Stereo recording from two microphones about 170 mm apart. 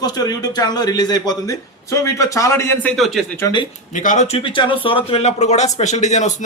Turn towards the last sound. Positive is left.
turn(degrees=45)  # may be behind; listen again after turning